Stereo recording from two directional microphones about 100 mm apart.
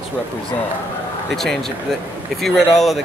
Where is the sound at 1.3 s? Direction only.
Centre (ahead or behind).